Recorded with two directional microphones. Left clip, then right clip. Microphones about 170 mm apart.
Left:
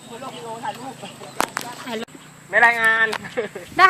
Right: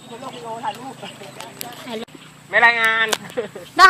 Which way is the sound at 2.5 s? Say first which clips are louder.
Right 1 dB; 10° left (ahead or behind).